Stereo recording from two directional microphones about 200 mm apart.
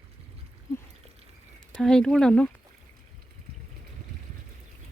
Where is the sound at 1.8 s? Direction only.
Centre (ahead or behind).